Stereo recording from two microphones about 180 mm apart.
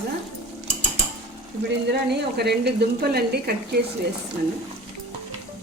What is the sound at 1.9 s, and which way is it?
Speech, 65° right (ahead or behind).